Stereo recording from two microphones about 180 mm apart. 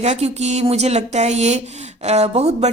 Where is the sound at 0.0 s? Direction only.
40° right (ahead or behind).